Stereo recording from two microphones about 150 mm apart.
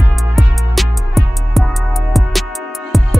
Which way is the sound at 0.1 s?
Centre (ahead or behind).